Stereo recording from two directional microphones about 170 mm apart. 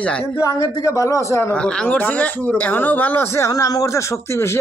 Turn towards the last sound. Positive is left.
turn(degrees=15)  # may be behind; listen again after turning